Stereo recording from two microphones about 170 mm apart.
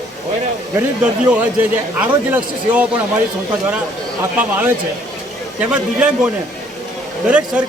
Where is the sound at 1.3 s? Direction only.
10° right (ahead or behind).